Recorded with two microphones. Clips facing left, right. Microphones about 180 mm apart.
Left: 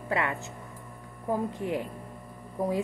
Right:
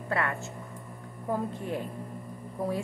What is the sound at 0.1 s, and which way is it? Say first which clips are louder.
Speech: left 1 dB; 15° left (ahead or behind).